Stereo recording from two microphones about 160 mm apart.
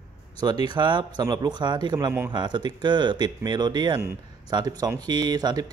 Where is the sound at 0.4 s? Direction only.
25° right (ahead or behind).